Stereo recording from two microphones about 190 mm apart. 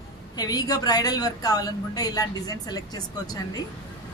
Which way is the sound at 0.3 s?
20° left (ahead or behind).